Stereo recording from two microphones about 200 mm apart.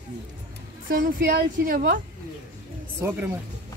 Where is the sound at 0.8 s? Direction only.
45° right (ahead or behind).